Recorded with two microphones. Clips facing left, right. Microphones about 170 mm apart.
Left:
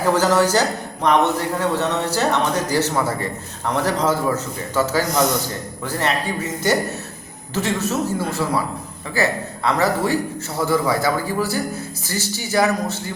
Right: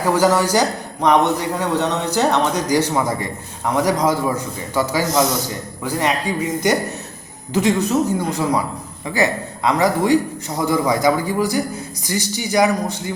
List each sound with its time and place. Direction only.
0.0 s a man's voice: 10° right (ahead or behind)